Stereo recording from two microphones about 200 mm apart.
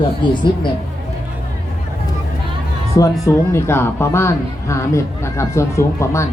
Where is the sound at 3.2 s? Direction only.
15° left (ahead or behind).